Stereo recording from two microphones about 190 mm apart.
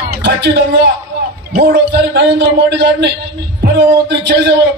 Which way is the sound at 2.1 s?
65° right (ahead or behind).